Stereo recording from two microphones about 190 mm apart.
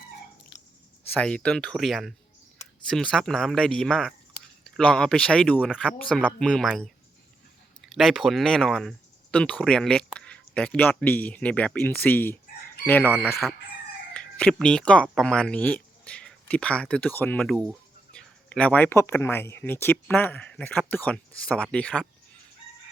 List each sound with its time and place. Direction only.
1.0 s speech: 5° left (ahead or behind)